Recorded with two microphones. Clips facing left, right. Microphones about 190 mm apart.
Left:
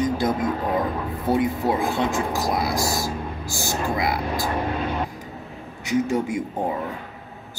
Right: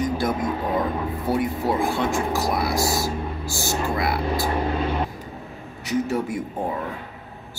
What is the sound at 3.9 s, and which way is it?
Speech, 20° left (ahead or behind).